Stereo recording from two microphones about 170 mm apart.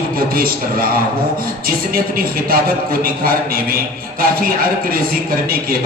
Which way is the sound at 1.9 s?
60° right (ahead or behind).